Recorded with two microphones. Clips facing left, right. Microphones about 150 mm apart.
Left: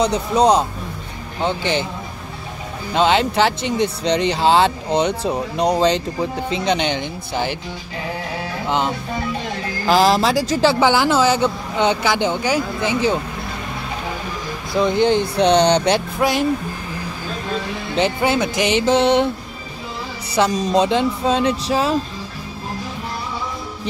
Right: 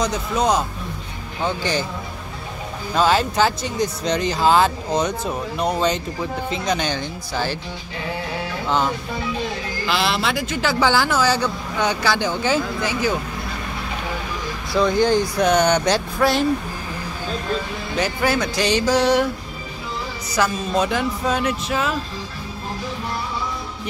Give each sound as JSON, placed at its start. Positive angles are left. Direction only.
{"t": 0.0, "sound": "speech", "side_deg": 35}
{"t": 1.4, "sound": "speech", "side_deg": 20}
{"t": 2.9, "sound": "speech", "side_deg": 25}
{"t": 8.6, "sound": "music", "side_deg": 20}
{"t": 9.8, "sound": "speech", "side_deg": 40}
{"t": 14.7, "sound": "speech", "side_deg": 20}
{"t": 16.2, "sound": "speech", "side_deg": 15}
{"t": 17.9, "sound": "speech", "side_deg": 25}
{"t": 20.4, "sound": "speech", "side_deg": 25}